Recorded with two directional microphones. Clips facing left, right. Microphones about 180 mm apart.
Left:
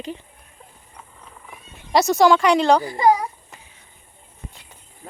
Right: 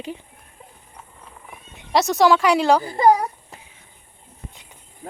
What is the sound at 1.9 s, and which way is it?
Speech, centre (ahead or behind).